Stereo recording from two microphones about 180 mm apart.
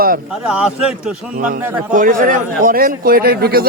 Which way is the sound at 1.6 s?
10° right (ahead or behind).